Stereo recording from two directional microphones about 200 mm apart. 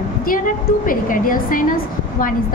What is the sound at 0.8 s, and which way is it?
Speech, 45° left (ahead or behind).